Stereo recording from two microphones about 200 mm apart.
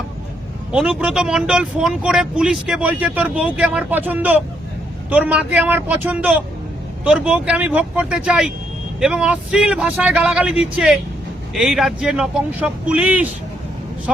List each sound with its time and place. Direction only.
0.7 s speech: 5° right (ahead or behind)